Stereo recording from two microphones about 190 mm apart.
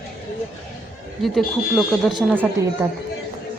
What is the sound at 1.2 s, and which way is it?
A woman's voice, centre (ahead or behind).